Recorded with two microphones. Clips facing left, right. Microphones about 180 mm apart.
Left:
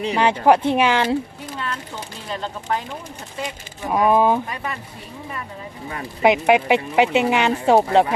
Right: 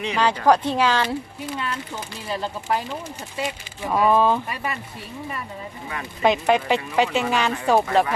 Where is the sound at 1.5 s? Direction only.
10° right (ahead or behind).